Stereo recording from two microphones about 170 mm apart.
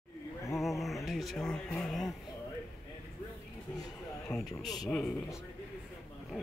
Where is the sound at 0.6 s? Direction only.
Centre (ahead or behind).